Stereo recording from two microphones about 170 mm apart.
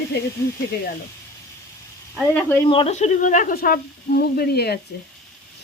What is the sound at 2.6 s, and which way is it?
Speech, 35° left (ahead or behind).